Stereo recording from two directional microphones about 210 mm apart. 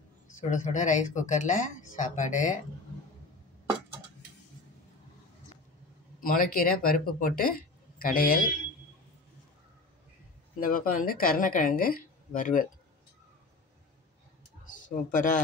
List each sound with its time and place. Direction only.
0.4 s speech: 35° left (ahead or behind)
6.2 s speech: 40° left (ahead or behind)
10.6 s speech: 40° left (ahead or behind)
14.7 s speech: 40° left (ahead or behind)